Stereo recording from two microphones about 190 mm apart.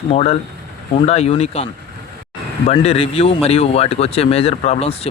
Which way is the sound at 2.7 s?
30° left (ahead or behind).